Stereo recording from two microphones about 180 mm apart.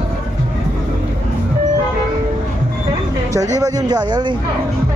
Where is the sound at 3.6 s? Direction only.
20° right (ahead or behind).